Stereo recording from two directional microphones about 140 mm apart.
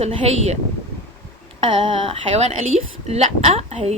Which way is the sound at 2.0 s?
45° right (ahead or behind).